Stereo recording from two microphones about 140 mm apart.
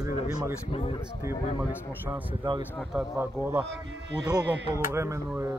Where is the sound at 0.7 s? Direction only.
45° left (ahead or behind).